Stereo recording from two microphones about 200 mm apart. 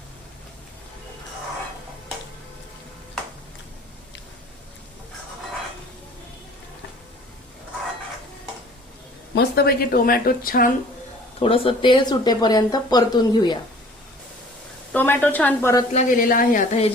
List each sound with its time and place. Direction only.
9.3 s speech: 55° left (ahead or behind)
11.3 s speech: 30° left (ahead or behind)
14.9 s a woman's voice: 10° left (ahead or behind)
15.9 s speech: 40° left (ahead or behind)